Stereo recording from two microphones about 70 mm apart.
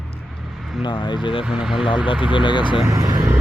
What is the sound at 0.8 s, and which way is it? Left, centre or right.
Speech, left.